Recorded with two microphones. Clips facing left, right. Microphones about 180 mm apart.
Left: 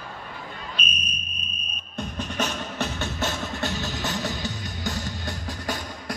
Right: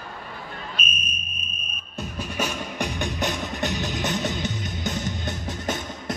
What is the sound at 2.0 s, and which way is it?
Music, 10° right (ahead or behind).